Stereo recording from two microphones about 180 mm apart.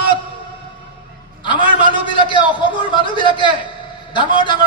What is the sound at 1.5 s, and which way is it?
A man's voice, 25° left (ahead or behind).